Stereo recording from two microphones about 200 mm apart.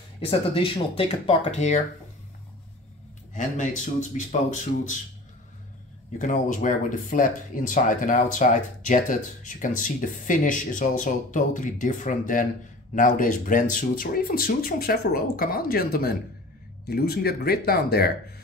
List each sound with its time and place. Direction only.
0.2 s speech: 25° left (ahead or behind)
3.3 s speech: 40° left (ahead or behind)
6.1 s speech: 40° left (ahead or behind)